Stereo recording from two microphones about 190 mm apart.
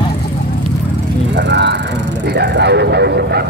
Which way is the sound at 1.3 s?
65° right (ahead or behind).